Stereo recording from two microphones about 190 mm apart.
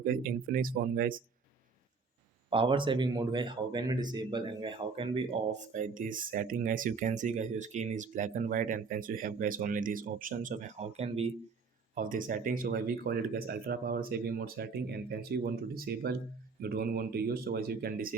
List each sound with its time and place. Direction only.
0.0 s speech: 50° right (ahead or behind)
2.5 s speech: 25° right (ahead or behind)
11.9 s speech: 45° right (ahead or behind)